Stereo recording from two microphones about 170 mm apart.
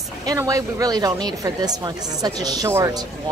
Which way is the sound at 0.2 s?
20° right (ahead or behind).